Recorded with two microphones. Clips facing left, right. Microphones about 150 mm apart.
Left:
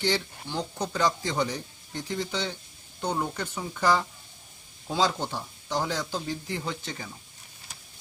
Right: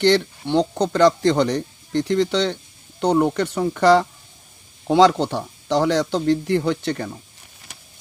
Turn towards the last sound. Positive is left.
turn(degrees=-65)  # may be behind; listen again after turning